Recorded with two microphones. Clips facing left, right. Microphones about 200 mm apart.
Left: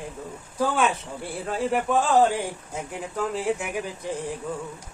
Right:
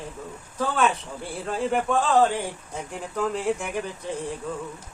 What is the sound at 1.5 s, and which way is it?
A man's voice, centre (ahead or behind).